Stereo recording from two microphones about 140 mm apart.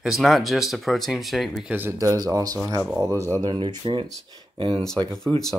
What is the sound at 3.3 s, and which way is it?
Speech, 30° right (ahead or behind).